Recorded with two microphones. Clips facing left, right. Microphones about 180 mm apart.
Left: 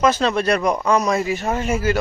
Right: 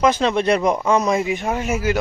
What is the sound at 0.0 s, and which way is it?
A man's voice, 15° right (ahead or behind).